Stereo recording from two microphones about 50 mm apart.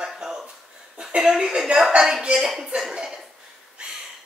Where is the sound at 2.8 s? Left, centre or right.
Centre.